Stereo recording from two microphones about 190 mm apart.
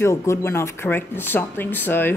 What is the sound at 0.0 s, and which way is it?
Speech, 15° left (ahead or behind).